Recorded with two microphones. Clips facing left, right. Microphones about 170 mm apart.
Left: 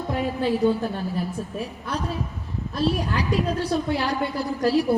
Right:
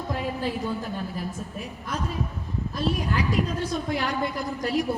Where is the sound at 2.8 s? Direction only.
35° left (ahead or behind).